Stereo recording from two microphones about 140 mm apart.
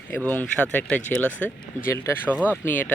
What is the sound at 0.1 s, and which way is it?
Speech, 10° left (ahead or behind).